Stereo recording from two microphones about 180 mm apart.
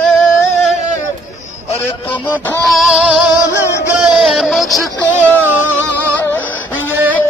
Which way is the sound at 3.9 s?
Centre (ahead or behind).